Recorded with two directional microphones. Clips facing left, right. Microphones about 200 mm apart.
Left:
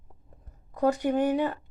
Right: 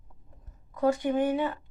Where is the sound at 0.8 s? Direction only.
40° left (ahead or behind).